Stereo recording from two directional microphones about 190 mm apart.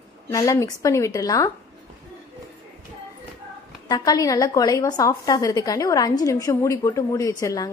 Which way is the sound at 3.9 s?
20° left (ahead or behind).